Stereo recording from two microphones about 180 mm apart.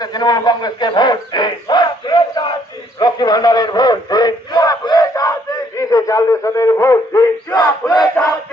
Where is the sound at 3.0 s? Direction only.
20° left (ahead or behind).